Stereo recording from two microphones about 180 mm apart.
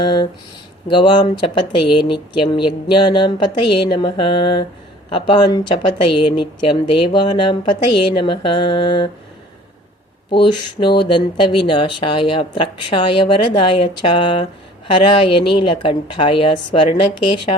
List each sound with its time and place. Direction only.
0.0 s speech: 25° left (ahead or behind)
10.2 s speech: 25° left (ahead or behind)